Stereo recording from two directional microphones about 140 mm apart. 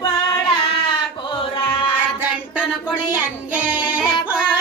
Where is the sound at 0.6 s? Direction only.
40° left (ahead or behind).